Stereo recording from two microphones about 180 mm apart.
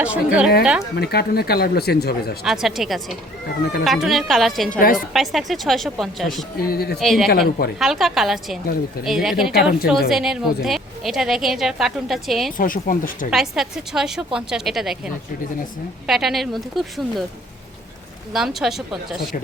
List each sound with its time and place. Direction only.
0.0 s a woman's voice: 5° right (ahead or behind)
0.9 s speech: 65° left (ahead or behind)
2.4 s a woman's voice: centre (ahead or behind)
4.8 s speech: 50° left (ahead or behind)
5.1 s a woman's voice: centre (ahead or behind)
6.6 s speech: 60° left (ahead or behind)
7.0 s a woman's voice: centre (ahead or behind)
7.3 s speech: 60° left (ahead or behind)
7.8 s a woman's voice: centre (ahead or behind)
12.5 s speech: 50° left (ahead or behind)
13.3 s a woman's voice: centre (ahead or behind)
18.3 s a woman's voice: centre (ahead or behind)